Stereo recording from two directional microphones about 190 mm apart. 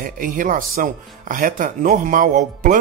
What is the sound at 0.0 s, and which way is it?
Speech, 45° right (ahead or behind).